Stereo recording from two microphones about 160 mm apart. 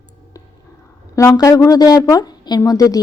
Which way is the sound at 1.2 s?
20° left (ahead or behind).